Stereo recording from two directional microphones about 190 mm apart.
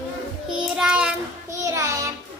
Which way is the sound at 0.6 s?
5° right (ahead or behind).